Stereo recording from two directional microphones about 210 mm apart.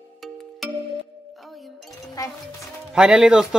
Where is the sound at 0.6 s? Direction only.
Centre (ahead or behind).